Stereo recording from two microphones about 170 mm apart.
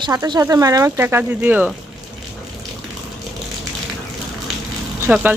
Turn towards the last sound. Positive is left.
turn(degrees=-10)  # may be behind; listen again after turning